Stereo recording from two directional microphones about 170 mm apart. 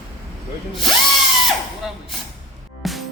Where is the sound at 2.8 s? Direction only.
Centre (ahead or behind).